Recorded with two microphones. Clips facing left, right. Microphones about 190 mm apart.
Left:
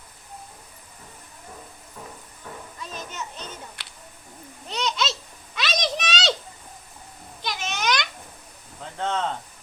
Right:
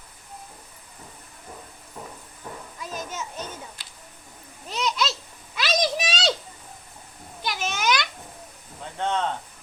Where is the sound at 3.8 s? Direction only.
70° left (ahead or behind).